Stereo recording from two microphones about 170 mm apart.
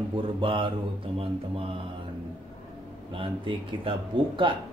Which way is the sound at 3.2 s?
30° right (ahead or behind).